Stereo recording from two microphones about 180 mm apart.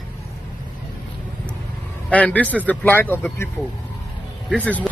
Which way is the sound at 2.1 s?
5° left (ahead or behind).